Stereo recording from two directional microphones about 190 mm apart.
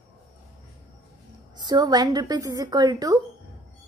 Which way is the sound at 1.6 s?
20° right (ahead or behind).